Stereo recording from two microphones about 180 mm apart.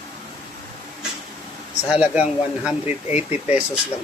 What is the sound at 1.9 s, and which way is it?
Speech, 5° right (ahead or behind).